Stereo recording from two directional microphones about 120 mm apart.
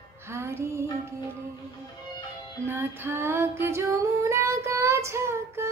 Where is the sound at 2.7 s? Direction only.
20° right (ahead or behind).